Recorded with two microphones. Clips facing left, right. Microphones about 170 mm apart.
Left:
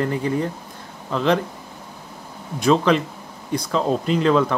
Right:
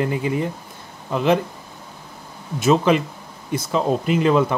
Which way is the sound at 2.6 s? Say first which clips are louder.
Even; 5° right (ahead or behind).